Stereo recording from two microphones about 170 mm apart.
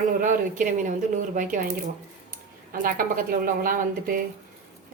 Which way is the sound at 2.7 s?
55° right (ahead or behind).